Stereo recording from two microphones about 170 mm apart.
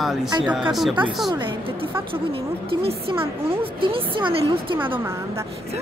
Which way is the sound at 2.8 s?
35° right (ahead or behind).